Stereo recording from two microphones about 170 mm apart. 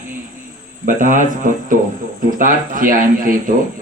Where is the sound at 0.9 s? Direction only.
50° right (ahead or behind).